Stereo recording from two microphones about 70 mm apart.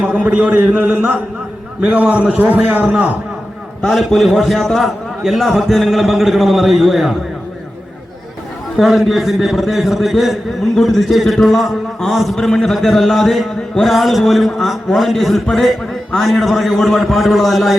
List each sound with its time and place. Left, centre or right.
0.0 s a man's voice: centre
3.8 s a man's voice: centre
8.8 s a man's voice: centre